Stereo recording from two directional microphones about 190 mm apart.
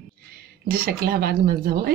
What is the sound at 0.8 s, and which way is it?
Speech, 55° right (ahead or behind).